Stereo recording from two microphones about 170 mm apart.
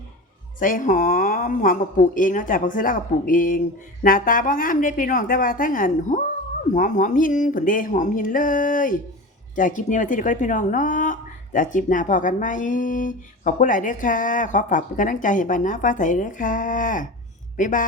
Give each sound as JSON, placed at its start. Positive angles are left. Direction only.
{"t": 0.6, "sound": "speech", "side_deg": 50}